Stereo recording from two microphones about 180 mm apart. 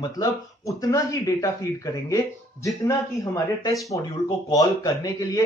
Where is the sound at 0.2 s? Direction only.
20° left (ahead or behind).